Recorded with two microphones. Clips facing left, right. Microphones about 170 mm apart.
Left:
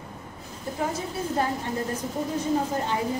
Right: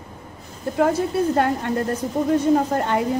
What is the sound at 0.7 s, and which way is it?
A woman's voice, 70° right (ahead or behind).